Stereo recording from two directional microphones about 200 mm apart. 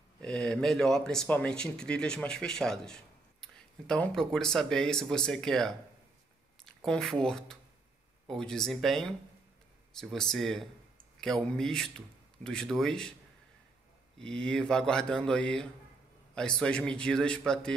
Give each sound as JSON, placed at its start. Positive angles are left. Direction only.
{"t": 0.2, "sound": "speech", "side_deg": 5}
{"t": 14.1, "sound": "speech", "side_deg": 5}